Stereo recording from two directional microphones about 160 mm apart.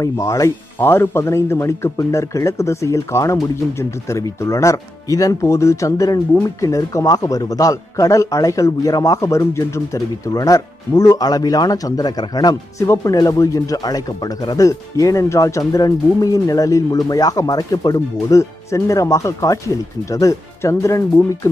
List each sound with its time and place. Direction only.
0.0 s speech: 20° left (ahead or behind)